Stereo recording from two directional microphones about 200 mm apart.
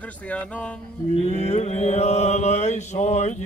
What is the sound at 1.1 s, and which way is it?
Mantra, 35° left (ahead or behind).